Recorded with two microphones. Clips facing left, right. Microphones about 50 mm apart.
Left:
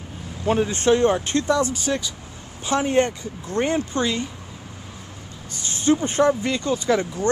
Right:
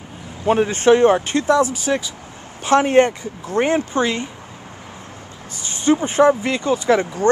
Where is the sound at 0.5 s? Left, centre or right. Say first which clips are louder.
Right 5 dB; right.